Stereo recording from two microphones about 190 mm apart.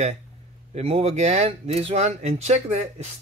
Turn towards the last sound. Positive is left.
turn(degrees=-35)  # may be behind; listen again after turning